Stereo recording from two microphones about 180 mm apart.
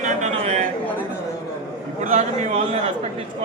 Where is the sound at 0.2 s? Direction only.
40° right (ahead or behind).